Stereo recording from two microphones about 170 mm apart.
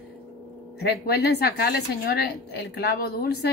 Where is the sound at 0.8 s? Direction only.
70° left (ahead or behind).